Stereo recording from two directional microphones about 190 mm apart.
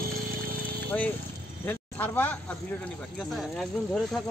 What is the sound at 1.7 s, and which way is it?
Speech, 10° left (ahead or behind).